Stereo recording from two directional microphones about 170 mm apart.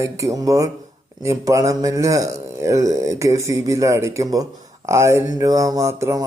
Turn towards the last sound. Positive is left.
turn(degrees=-15)  # may be behind; listen again after turning